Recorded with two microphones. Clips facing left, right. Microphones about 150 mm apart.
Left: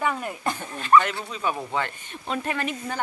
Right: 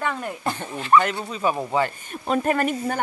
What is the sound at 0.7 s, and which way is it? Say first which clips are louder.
Speech: even; 15° right (ahead or behind).